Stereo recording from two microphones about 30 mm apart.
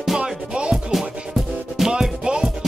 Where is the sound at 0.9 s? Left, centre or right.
Centre.